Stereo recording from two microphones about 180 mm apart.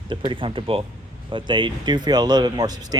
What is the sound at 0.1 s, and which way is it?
Speech, 30° right (ahead or behind).